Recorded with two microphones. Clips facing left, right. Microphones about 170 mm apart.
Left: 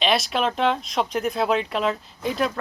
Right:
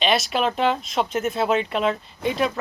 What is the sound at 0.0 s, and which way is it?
Speech, centre (ahead or behind).